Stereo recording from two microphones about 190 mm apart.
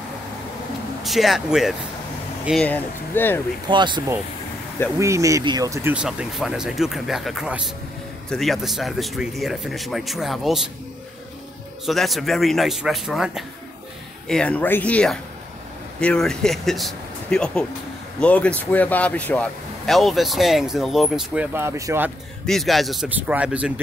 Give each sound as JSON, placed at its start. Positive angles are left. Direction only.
{"t": 1.0, "sound": "speech", "side_deg": 0}
{"t": 2.6, "sound": "speech", "side_deg": 10}
{"t": 3.6, "sound": "speech", "side_deg": -25}
{"t": 11.8, "sound": "speech", "side_deg": 0}
{"t": 21.5, "sound": "speech", "side_deg": -15}
{"t": 22.5, "sound": "speech", "side_deg": 0}